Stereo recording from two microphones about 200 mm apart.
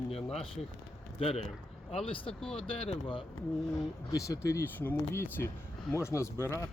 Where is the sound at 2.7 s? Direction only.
25° left (ahead or behind).